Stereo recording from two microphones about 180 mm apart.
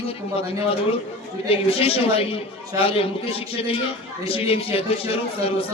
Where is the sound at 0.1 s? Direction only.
30° left (ahead or behind).